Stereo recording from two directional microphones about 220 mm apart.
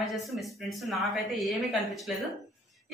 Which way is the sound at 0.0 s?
Centre (ahead or behind).